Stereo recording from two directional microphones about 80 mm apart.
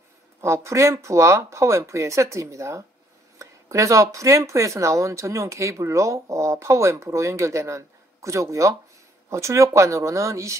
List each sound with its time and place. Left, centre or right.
0.4 s speech: right